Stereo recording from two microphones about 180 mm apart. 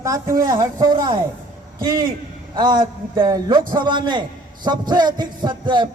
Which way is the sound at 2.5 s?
25° right (ahead or behind).